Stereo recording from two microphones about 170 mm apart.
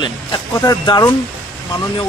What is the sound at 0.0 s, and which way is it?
Speech, 20° left (ahead or behind).